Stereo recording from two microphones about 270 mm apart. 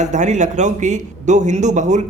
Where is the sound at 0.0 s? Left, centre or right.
Right.